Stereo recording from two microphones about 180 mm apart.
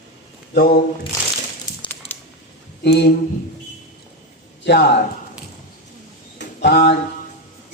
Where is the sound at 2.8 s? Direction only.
70° left (ahead or behind).